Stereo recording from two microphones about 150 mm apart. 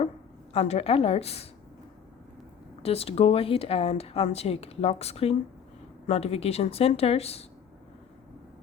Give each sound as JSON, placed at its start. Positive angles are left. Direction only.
{"t": 0.5, "sound": "speech", "side_deg": 45}
{"t": 2.8, "sound": "speech", "side_deg": 40}